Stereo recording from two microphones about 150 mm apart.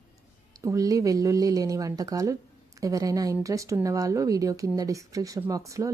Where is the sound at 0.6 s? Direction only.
20° right (ahead or behind).